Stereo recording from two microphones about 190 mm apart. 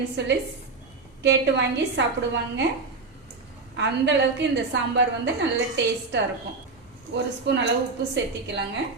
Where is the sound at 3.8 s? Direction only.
70° right (ahead or behind).